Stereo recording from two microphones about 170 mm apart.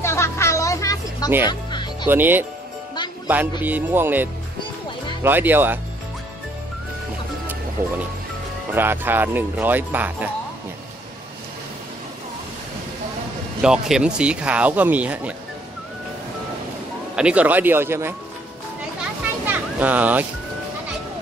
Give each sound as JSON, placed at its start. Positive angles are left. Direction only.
{"t": 0.0, "sound": "a sound", "side_deg": 15}
{"t": 1.5, "sound": "music", "side_deg": 25}
{"t": 2.0, "sound": "speech", "side_deg": -10}
{"t": 3.6, "sound": "speech", "side_deg": -10}
{"t": 8.7, "sound": "speech", "side_deg": -10}
{"t": 13.6, "sound": "speech", "side_deg": -5}
{"t": 17.1, "sound": "speech", "side_deg": -5}
{"t": 19.4, "sound": "music", "side_deg": -10}